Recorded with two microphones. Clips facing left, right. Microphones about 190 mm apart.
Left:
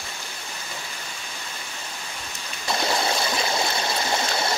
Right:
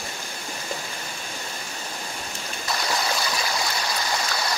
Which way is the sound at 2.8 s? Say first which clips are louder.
Left 3 dB; 25° left (ahead or behind).